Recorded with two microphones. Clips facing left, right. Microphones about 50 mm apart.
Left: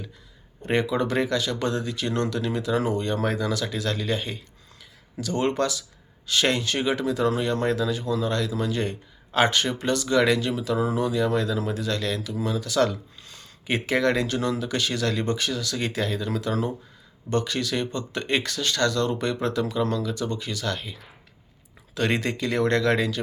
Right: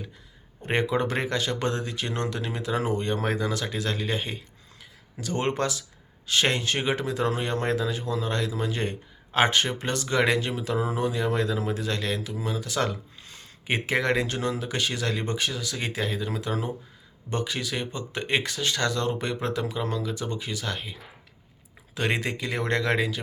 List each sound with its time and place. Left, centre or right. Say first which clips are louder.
0.6 s speech: left 1 dB; right